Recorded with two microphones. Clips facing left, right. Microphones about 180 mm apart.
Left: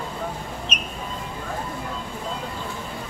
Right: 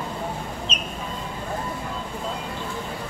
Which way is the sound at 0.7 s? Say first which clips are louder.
Right 1 dB; 65° left (ahead or behind).